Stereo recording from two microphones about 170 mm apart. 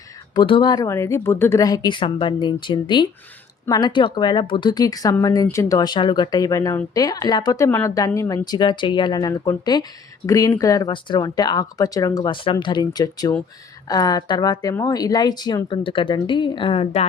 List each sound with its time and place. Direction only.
0.3 s speech: 30° left (ahead or behind)